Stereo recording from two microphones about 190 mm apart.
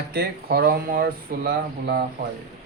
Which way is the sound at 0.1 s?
55° right (ahead or behind).